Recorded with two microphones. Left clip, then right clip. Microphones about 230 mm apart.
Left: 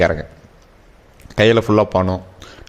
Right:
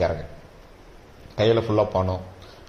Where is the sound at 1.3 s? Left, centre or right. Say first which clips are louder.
Left 7 dB; left.